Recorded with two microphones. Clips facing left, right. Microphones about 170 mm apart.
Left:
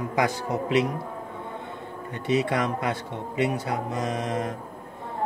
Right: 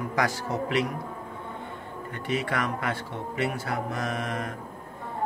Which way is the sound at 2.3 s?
20° left (ahead or behind).